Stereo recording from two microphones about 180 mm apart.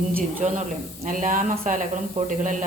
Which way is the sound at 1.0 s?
45° right (ahead or behind).